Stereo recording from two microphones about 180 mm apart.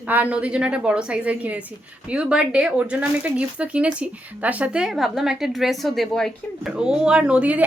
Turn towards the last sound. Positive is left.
turn(degrees=-5)  # may be behind; listen again after turning